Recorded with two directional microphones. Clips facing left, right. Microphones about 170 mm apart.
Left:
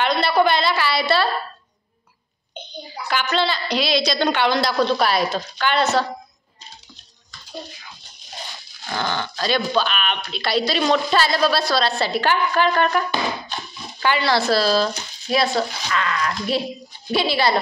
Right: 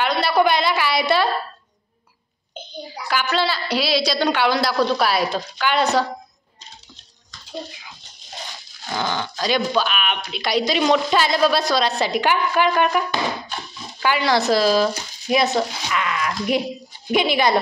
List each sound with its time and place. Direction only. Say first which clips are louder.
0.0 s speech: even; 10° right (ahead or behind)
3.1 s speech: even; 5° right (ahead or behind)
8.8 s speech: even; 10° right (ahead or behind)